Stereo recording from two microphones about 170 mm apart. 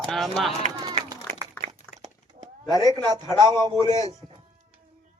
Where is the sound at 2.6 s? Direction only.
20° right (ahead or behind).